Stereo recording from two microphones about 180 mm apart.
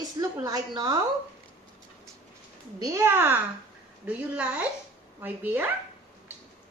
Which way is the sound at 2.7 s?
20° right (ahead or behind).